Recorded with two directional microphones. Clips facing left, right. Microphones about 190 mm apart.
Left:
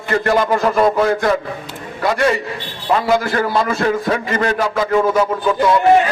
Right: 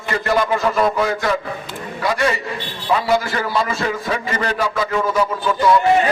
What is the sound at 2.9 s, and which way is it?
A man's voice, 55° left (ahead or behind).